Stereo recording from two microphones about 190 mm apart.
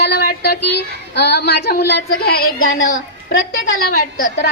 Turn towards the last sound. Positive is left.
turn(degrees=55)  # may be behind; listen again after turning